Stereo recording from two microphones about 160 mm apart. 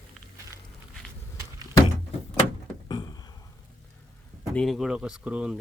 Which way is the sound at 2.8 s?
25° left (ahead or behind).